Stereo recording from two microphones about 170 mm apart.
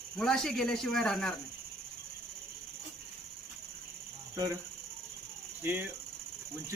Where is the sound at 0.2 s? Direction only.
5° left (ahead or behind).